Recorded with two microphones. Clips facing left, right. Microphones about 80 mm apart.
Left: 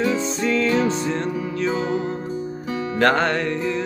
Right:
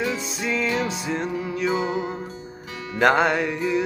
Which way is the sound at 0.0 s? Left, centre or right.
Centre.